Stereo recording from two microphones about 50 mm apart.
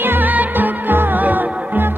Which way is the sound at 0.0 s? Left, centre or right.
Right.